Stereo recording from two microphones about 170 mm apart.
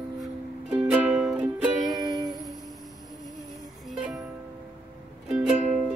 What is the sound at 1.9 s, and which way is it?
Ukulele, 20° right (ahead or behind).